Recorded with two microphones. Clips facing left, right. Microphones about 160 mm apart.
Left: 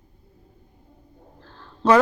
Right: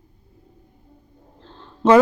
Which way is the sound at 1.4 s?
20° right (ahead or behind).